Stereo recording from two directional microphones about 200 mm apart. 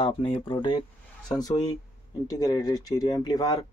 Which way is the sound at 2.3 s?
15° left (ahead or behind).